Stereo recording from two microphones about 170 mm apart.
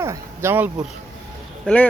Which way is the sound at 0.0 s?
15° right (ahead or behind).